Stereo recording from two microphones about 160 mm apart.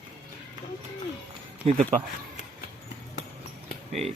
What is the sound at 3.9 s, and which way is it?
Speech, 40° right (ahead or behind).